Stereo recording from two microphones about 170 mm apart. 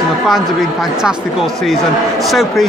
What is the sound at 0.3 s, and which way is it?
Speech, centre (ahead or behind).